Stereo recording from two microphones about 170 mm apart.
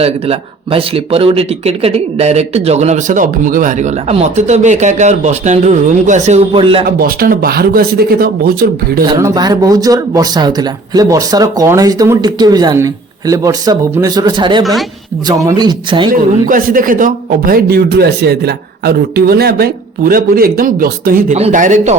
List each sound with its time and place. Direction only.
0.0 s speech: 35° right (ahead or behind)
6.8 s a man's voice: 60° right (ahead or behind)
9.1 s speech: 20° right (ahead or behind)
14.6 s a woman's voice: centre (ahead or behind)
15.3 s speech: 20° right (ahead or behind)
16.1 s a man's voice: 55° right (ahead or behind)
21.3 s speech: 45° right (ahead or behind)